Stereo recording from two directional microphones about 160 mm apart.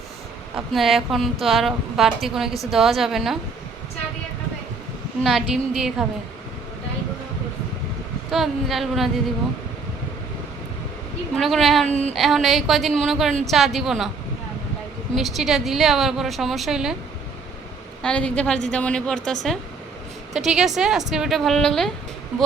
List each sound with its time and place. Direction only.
0.5 s a woman's voice: centre (ahead or behind)
5.2 s a woman's voice: centre (ahead or behind)
8.3 s a woman's voice: centre (ahead or behind)
11.3 s a woman's voice: centre (ahead or behind)
11.9 s child singing: 45° right (ahead or behind)
12.1 s a woman's voice: centre (ahead or behind)
15.1 s a woman's voice: centre (ahead or behind)
18.0 s a woman's voice: 5° left (ahead or behind)